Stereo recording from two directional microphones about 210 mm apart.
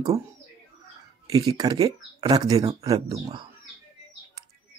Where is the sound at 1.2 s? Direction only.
20° right (ahead or behind).